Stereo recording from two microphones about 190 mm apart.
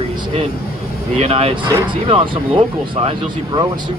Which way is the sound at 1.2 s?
35° right (ahead or behind).